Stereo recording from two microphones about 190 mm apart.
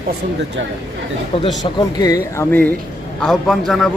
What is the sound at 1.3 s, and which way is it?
Speech, 30° left (ahead or behind).